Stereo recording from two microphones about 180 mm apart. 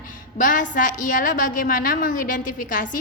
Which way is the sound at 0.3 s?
45° left (ahead or behind).